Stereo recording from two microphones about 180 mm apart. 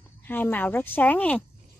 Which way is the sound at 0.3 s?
10° left (ahead or behind).